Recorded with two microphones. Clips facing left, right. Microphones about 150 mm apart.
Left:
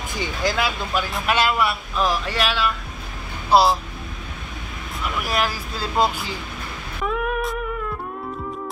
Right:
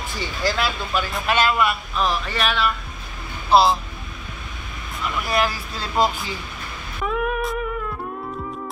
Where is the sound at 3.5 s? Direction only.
10° left (ahead or behind).